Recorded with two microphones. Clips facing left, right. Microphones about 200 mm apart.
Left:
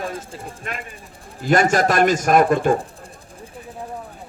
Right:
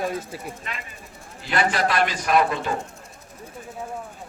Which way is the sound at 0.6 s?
50° left (ahead or behind).